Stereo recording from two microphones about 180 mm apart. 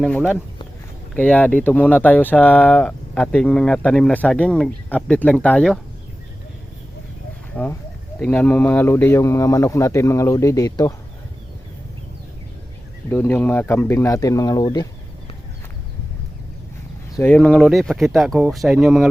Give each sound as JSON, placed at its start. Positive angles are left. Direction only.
{"t": 0.0, "sound": "speech", "side_deg": 5}
{"t": 7.5, "sound": "speech", "side_deg": 5}
{"t": 13.1, "sound": "speech", "side_deg": 10}
{"t": 17.2, "sound": "speech", "side_deg": 5}